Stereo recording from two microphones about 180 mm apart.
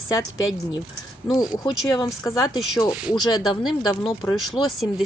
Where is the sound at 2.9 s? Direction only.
5° right (ahead or behind).